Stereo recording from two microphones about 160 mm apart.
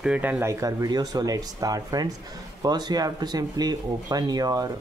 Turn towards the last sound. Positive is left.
turn(degrees=-25)  # may be behind; listen again after turning